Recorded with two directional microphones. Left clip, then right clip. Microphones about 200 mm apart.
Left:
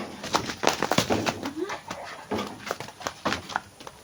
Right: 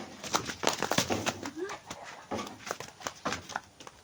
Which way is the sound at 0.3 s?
40° right (ahead or behind).